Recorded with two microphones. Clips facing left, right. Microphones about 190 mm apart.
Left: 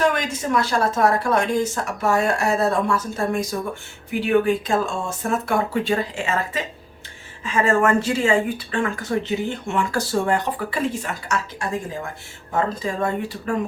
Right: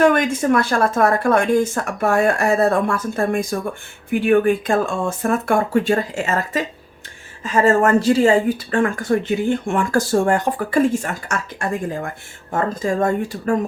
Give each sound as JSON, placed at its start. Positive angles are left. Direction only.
{"t": 0.0, "sound": "speech", "side_deg": -55}